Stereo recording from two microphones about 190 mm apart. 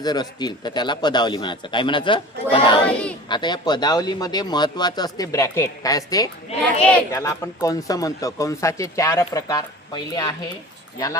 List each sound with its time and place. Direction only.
0.0 s a man's voice: 20° left (ahead or behind)
2.8 s speech: 5° left (ahead or behind)
3.2 s a man's voice: 25° left (ahead or behind)